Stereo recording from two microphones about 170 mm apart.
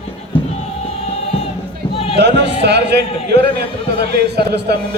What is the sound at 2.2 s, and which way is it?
A man's voice, 90° right.